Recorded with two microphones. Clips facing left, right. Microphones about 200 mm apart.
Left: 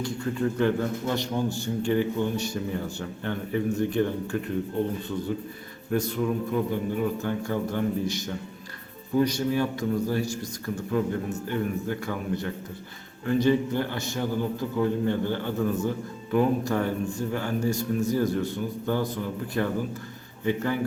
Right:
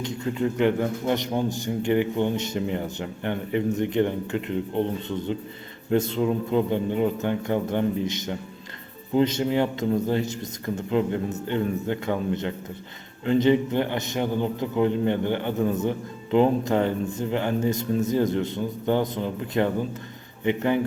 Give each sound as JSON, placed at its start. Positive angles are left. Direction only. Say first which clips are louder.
{"t": 0.0, "sound": "a man's voice", "louder": "right 1 dB", "side_deg": -20}